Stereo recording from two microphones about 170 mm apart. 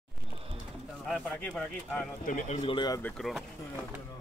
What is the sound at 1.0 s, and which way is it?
Speech, 5° left (ahead or behind).